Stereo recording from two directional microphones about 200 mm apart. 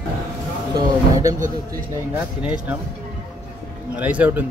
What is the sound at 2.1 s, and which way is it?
Speech, 5° right (ahead or behind).